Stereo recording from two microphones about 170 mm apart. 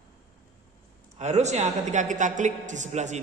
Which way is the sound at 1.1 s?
40° right (ahead or behind).